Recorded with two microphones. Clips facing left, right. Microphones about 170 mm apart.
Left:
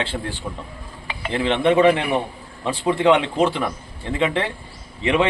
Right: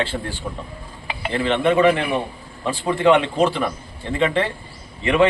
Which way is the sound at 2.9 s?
15° left (ahead or behind).